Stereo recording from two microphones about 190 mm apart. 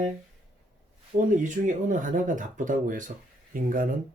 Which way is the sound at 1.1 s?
40° right (ahead or behind).